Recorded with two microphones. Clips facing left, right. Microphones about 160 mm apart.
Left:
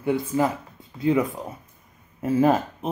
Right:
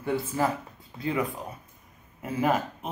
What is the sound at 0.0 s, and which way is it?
Speech, 15° left (ahead or behind).